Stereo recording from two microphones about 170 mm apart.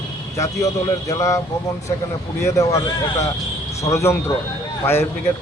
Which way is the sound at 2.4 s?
20° left (ahead or behind).